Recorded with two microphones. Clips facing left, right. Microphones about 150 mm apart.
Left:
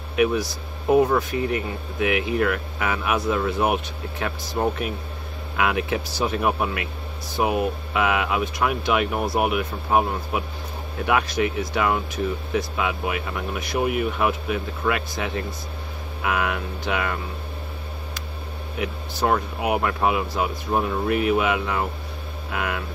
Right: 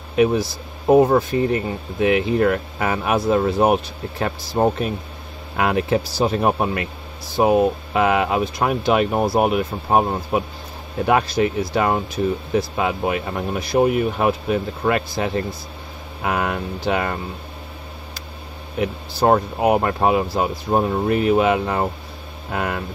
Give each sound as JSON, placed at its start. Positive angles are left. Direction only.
{"t": 0.1, "sound": "speech", "side_deg": -30}
{"t": 18.8, "sound": "speech", "side_deg": -35}